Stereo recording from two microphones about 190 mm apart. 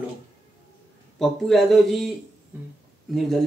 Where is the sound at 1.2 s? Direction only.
Centre (ahead or behind).